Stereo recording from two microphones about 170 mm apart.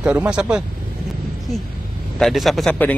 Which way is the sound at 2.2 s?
Centre (ahead or behind).